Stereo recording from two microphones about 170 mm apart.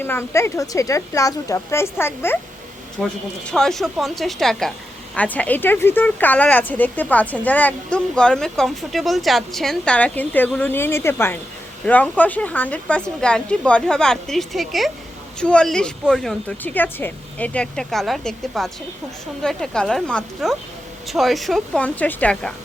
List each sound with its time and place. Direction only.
0.0 s speech: 15° left (ahead or behind)
3.0 s a woman's voice: 5° left (ahead or behind)